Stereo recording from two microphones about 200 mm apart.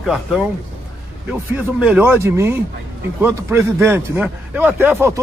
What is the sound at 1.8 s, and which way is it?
A man's voice, 5° right (ahead or behind).